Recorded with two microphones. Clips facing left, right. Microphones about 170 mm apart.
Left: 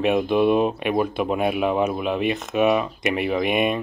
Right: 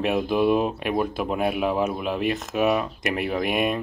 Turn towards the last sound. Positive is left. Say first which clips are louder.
# left 3 dB
turn(degrees=0)  # may be behind; listen again after turning